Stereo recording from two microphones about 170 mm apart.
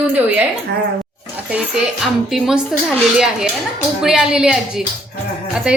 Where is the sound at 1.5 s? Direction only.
5° right (ahead or behind).